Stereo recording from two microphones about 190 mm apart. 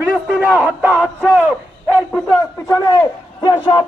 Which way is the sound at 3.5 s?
25° left (ahead or behind).